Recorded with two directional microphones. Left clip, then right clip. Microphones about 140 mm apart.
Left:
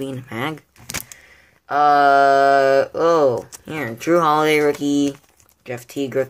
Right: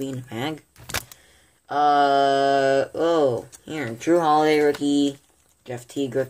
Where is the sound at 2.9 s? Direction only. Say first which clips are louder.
Left 5 dB; 35° left (ahead or behind).